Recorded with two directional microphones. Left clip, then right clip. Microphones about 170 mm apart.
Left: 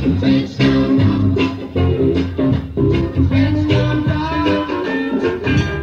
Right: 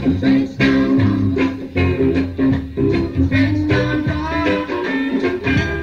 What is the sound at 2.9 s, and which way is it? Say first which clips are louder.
Music: even; 5° right (ahead or behind).